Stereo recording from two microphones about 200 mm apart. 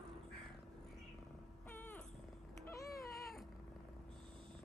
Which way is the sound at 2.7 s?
15° left (ahead or behind).